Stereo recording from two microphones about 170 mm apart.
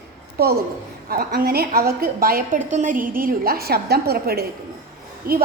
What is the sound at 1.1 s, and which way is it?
A woman's voice, 60° right (ahead or behind).